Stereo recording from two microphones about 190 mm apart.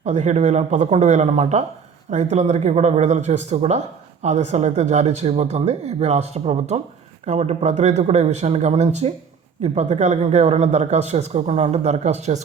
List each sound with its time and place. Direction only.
0.0 s speech: 40° right (ahead or behind)